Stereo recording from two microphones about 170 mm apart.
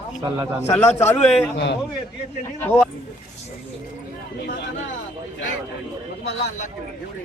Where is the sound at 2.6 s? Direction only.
10° left (ahead or behind).